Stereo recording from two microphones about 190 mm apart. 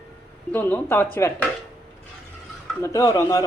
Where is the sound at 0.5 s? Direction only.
10° left (ahead or behind).